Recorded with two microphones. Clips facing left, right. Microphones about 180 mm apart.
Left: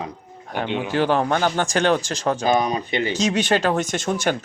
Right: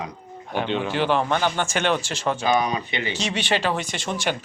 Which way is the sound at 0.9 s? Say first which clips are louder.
Left 4 dB; 40° left (ahead or behind).